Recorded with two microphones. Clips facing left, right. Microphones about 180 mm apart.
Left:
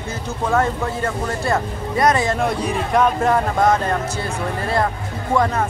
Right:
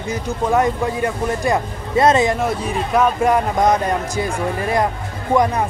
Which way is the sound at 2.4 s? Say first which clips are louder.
Even; 5° right (ahead or behind).